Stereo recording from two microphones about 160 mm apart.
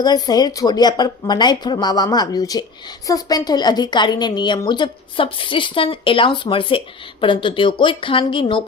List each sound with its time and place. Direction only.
0.0 s a woman's voice: 25° left (ahead or behind)